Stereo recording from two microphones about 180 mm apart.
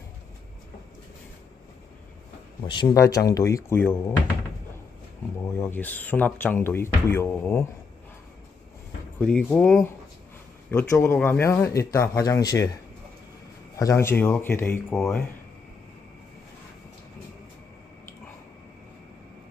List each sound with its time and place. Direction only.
2.6 s speech: 25° left (ahead or behind)
5.4 s speech: 15° left (ahead or behind)
9.2 s speech: 5° left (ahead or behind); by 12.6 s 20° left (ahead or behind)
13.7 s speech: 15° left (ahead or behind)